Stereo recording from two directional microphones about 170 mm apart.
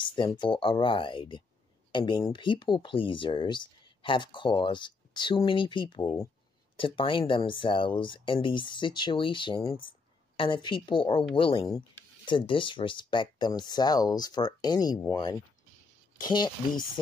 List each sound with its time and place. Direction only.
0.0 s a woman's voice: 30° left (ahead or behind)